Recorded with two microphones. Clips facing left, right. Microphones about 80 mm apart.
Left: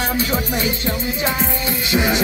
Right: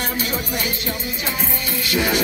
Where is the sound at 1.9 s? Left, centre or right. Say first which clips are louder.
Left 2 dB; left.